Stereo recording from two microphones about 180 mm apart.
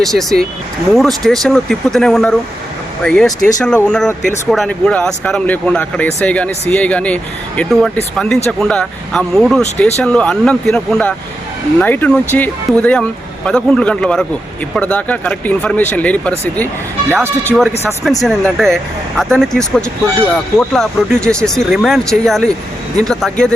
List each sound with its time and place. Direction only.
0.0 s speech: centre (ahead or behind)
17.5 s speech: centre (ahead or behind)